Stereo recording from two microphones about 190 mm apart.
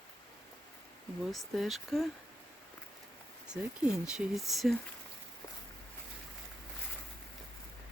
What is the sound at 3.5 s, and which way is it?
Speech, 5° right (ahead or behind).